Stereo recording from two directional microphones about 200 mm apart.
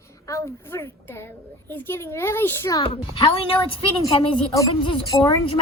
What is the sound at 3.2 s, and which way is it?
A woman's voice, 25° left (ahead or behind).